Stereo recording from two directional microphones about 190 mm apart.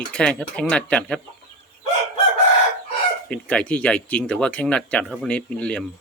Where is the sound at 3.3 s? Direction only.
5° left (ahead or behind).